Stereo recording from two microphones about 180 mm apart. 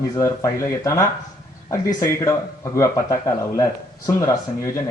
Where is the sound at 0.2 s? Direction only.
15° left (ahead or behind).